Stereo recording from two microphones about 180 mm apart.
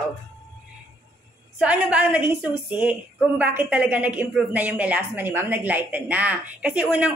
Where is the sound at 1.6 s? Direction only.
5° right (ahead or behind).